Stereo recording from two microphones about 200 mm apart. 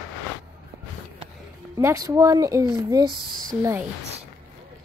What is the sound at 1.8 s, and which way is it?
Speech, 15° right (ahead or behind).